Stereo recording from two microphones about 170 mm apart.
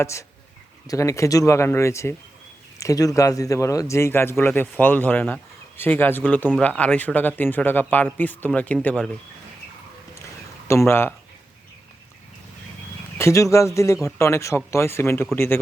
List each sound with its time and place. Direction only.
0.0 s speech: 15° left (ahead or behind)
10.7 s speech: 15° left (ahead or behind)
13.1 s speech: 20° left (ahead or behind)